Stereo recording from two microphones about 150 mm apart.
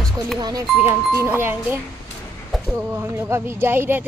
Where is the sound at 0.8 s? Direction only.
15° right (ahead or behind).